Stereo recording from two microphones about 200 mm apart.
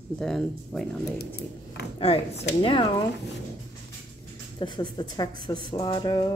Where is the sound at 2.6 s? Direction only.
25° left (ahead or behind).